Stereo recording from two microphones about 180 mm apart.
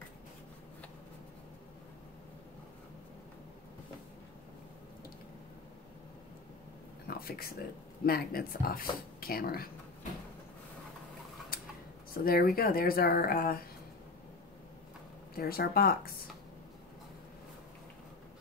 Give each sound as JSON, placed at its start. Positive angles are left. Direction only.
{"t": 7.1, "sound": "speech", "side_deg": 55}
{"t": 12.1, "sound": "speech", "side_deg": 55}
{"t": 15.3, "sound": "speech", "side_deg": 55}